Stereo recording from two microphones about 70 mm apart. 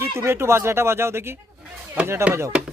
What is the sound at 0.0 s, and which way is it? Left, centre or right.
Speech, right.